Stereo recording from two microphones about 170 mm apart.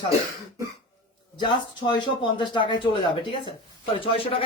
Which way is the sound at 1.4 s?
25° left (ahead or behind).